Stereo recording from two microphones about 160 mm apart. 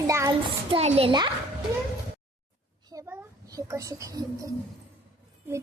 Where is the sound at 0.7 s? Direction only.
40° right (ahead or behind).